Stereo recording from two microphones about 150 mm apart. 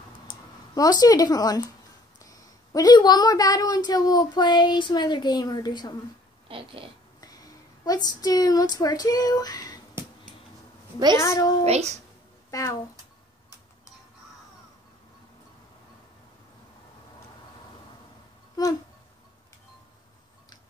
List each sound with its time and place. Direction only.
0.7 s speech: 25° left (ahead or behind)
6.5 s a sound: 35° right (ahead or behind)
7.2 s a woman's voice: 25° left (ahead or behind)
11.1 s speech: 20° left (ahead or behind)
11.6 s speech: 45° right (ahead or behind)
12.4 s a sound: 20° left (ahead or behind)